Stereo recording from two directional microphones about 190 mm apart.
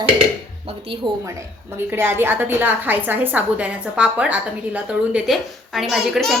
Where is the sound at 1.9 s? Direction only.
10° right (ahead or behind).